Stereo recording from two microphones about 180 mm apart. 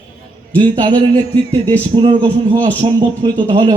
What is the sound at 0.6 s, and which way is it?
A man's voice, 25° right (ahead or behind).